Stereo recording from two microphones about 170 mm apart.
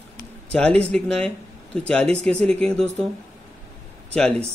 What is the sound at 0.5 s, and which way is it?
Speech, 5° left (ahead or behind).